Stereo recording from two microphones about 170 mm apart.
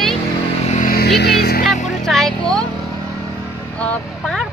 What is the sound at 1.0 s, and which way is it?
Speech, 75° left (ahead or behind).